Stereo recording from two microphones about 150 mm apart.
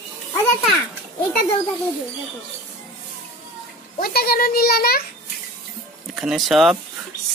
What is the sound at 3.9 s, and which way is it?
A child's voice, 90° left.